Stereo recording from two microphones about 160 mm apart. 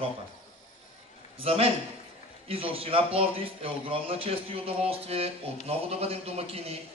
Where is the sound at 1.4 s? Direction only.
35° right (ahead or behind).